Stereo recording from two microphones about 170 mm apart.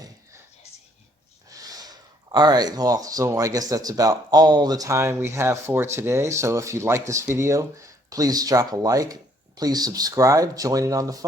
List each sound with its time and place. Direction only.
1.5 s snort: 20° right (ahead or behind)
2.3 s speech: 25° right (ahead or behind)